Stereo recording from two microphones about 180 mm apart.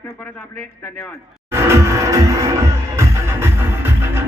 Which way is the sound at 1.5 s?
15° right (ahead or behind).